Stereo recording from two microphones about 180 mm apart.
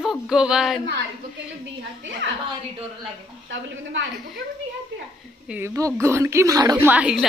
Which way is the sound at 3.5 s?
90° right.